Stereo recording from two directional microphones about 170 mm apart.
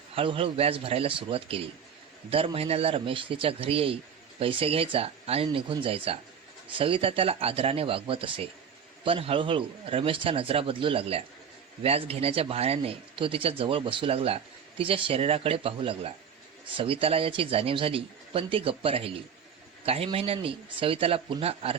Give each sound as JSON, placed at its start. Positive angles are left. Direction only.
{"t": 0.2, "sound": "speech", "side_deg": -30}